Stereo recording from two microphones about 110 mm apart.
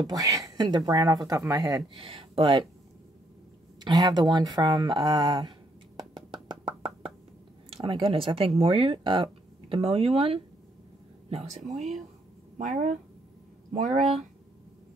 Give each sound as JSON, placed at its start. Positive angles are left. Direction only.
{"t": 0.0, "sound": "speech", "side_deg": -35}
{"t": 2.0, "sound": "speech", "side_deg": -50}
{"t": 3.8, "sound": "speech", "side_deg": -40}
{"t": 5.9, "sound": "music", "side_deg": -45}
{"t": 7.7, "sound": "speech", "side_deg": -55}
{"t": 11.2, "sound": "speech", "side_deg": -80}